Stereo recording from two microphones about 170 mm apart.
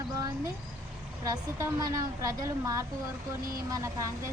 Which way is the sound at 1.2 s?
15° right (ahead or behind).